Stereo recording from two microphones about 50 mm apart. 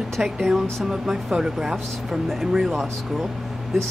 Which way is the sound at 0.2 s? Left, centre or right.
Centre.